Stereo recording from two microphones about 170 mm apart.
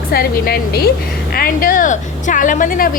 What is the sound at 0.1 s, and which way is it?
A woman's voice, 65° left (ahead or behind).